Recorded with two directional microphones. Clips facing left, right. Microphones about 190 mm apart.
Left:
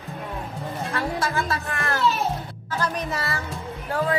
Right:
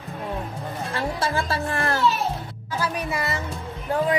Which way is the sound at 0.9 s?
30° right (ahead or behind).